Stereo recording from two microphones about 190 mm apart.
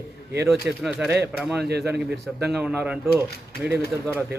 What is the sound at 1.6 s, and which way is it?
Speech, 60° right (ahead or behind).